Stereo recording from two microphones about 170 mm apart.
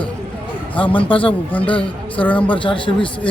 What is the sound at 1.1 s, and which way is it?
Speech, 30° left (ahead or behind).